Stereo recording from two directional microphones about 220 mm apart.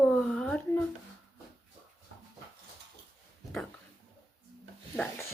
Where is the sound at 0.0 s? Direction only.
5° left (ahead or behind).